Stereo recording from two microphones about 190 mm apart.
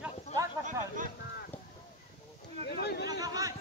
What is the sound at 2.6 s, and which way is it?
Speech, 60° left (ahead or behind).